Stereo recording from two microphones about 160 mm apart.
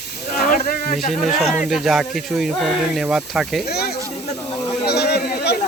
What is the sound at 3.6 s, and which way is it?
Speech, 85° left.